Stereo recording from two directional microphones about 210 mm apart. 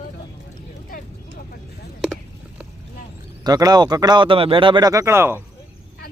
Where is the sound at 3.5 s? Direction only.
20° right (ahead or behind).